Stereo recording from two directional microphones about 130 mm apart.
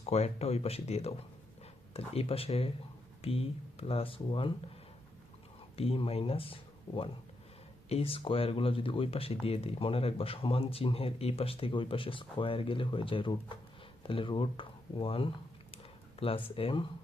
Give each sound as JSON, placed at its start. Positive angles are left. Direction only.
{"t": 0.0, "sound": "speech", "side_deg": 55}
{"t": 5.7, "sound": "speech", "side_deg": 50}